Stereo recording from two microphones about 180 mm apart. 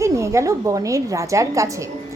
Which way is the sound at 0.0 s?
15° right (ahead or behind).